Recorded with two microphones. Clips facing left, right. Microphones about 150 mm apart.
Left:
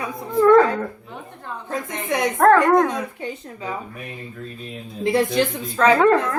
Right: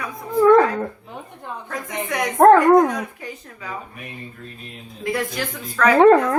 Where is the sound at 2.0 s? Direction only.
25° left (ahead or behind).